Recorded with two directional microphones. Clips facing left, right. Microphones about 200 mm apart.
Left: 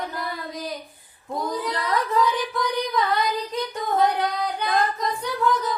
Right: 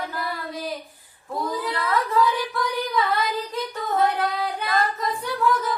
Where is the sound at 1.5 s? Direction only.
Centre (ahead or behind).